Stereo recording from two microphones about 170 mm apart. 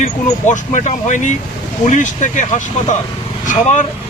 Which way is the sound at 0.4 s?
45° left (ahead or behind).